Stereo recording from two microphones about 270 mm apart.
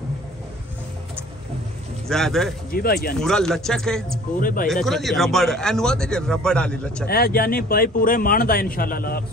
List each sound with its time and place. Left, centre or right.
2.0 s a man's voice: centre
2.7 s speech: left
3.2 s a man's voice: centre
4.4 s speech: left
4.8 s a man's voice: centre
7.1 s speech: left